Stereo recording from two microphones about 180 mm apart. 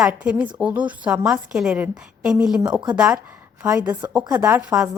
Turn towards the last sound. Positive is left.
turn(degrees=-15)  # may be behind; listen again after turning